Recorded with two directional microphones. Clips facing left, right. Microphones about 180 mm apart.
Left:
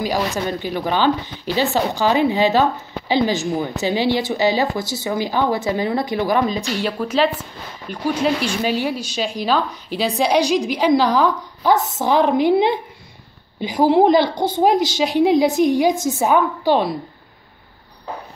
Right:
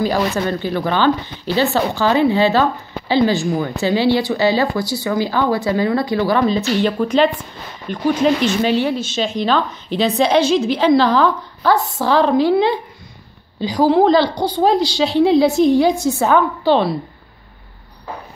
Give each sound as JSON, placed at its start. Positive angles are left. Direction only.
{"t": 0.0, "sound": "a woman's voice", "side_deg": 10}